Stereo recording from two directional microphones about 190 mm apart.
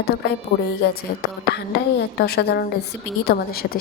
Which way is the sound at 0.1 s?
55° left (ahead or behind).